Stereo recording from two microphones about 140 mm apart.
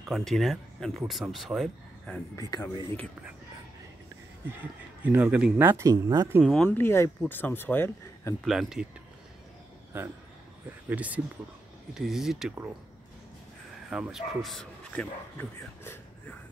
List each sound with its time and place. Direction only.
0.0 s speech: centre (ahead or behind)
2.3 s speech: 25° left (ahead or behind)
5.0 s speech: 15° right (ahead or behind)
6.4 s speech: 5° left (ahead or behind)
8.5 s speech: 5° right (ahead or behind)
9.9 s speech: 15° right (ahead or behind)
13.8 s speech: 5° right (ahead or behind)
15.8 s vehicle: 15° left (ahead or behind)